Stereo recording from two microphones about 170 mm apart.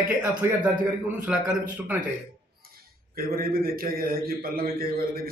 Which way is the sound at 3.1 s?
60° right (ahead or behind).